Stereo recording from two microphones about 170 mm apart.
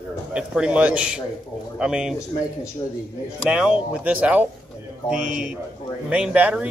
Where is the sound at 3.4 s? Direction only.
5° right (ahead or behind).